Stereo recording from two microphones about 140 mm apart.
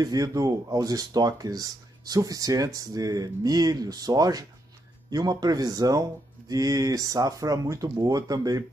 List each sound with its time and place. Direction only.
0.0 s speech: 25° right (ahead or behind)